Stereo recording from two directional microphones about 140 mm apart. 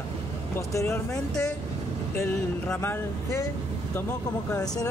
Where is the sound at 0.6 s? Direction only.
20° left (ahead or behind).